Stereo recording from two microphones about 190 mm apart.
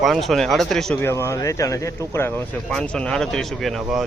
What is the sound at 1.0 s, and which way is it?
Speech, 15° left (ahead or behind).